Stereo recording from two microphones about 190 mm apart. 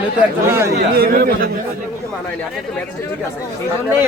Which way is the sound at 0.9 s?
50° right (ahead or behind).